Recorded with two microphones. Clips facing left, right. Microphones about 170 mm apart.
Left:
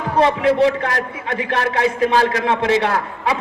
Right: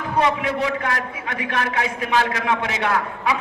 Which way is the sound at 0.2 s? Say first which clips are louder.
Left 7 dB; 30° left (ahead or behind).